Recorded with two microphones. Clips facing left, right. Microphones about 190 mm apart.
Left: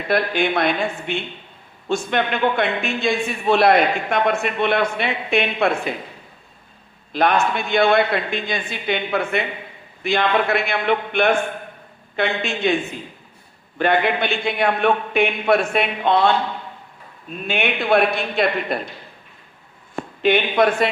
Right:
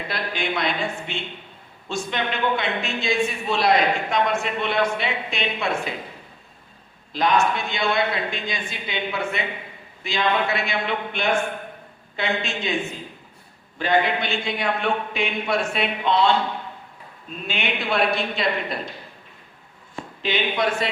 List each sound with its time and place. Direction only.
0.1 s a man's voice: 55° left (ahead or behind)
7.1 s a man's voice: 60° left (ahead or behind)
13.7 s a man's voice: 60° left (ahead or behind)
17.4 s a man's voice: 55° left (ahead or behind)
20.0 s speech: 55° left (ahead or behind)